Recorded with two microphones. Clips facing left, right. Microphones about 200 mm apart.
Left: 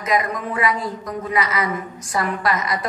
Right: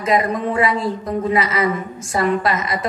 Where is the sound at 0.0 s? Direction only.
30° right (ahead or behind).